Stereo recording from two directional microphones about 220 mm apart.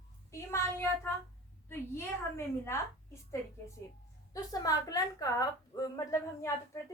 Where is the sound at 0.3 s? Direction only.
15° left (ahead or behind).